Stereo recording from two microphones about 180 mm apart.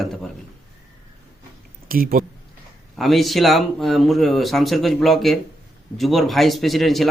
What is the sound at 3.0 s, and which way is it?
Speech, centre (ahead or behind).